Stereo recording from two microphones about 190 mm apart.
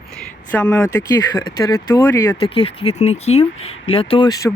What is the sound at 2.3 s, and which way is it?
Speech, 30° left (ahead or behind).